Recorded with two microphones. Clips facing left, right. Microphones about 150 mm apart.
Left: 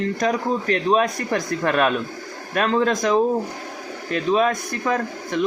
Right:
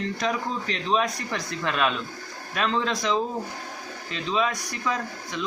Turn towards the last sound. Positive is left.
turn(degrees=55)  # may be behind; listen again after turning